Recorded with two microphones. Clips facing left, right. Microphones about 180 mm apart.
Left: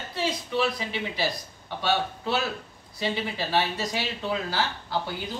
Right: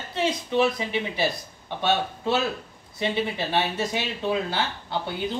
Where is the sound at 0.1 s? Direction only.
20° right (ahead or behind).